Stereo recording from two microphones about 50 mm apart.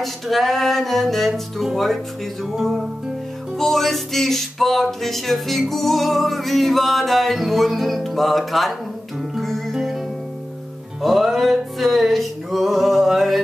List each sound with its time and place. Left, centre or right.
0.0 s music: centre
11.0 s music: centre